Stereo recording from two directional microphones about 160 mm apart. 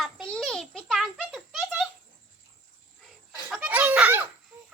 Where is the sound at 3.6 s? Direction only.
10° right (ahead or behind).